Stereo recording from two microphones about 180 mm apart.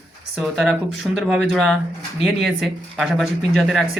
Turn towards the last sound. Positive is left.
turn(degrees=0)  # may be behind; listen again after turning